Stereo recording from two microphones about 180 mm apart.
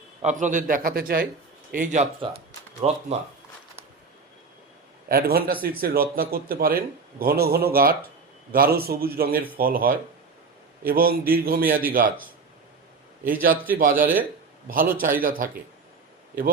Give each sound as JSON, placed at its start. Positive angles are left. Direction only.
{"t": 0.2, "sound": "a man's voice", "side_deg": -40}
{"t": 1.7, "sound": "a man's voice", "side_deg": -45}
{"t": 5.0, "sound": "a man's voice", "side_deg": -55}
{"t": 13.2, "sound": "a man's voice", "side_deg": -50}